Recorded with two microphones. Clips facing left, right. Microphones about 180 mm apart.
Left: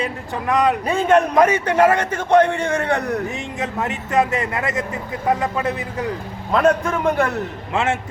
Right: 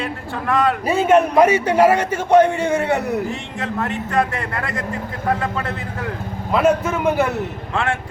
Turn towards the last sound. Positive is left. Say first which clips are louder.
# left 1 dB
turn(degrees=20)  # may be behind; listen again after turning